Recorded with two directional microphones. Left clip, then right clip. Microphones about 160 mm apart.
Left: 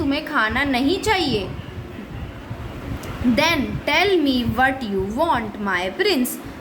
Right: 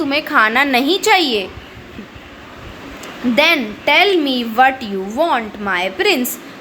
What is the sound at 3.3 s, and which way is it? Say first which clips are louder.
Speech: right 7 dB; 25° right (ahead or behind).